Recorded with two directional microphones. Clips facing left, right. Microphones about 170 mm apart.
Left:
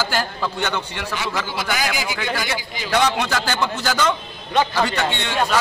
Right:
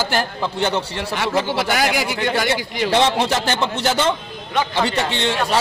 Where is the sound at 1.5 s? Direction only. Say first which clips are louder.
Right 5 dB; 70° right (ahead or behind).